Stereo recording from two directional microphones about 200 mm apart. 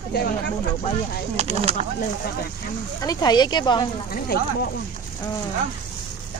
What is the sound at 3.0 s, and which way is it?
Speech, 20° left (ahead or behind).